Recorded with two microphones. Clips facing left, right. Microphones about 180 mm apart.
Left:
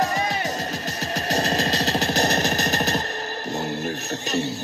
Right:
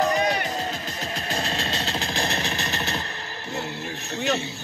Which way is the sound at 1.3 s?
40° left (ahead or behind).